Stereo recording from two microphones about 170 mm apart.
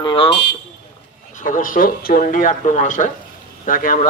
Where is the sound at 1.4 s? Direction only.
50° left (ahead or behind).